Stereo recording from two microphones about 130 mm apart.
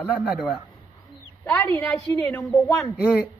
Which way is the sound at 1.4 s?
15° left (ahead or behind).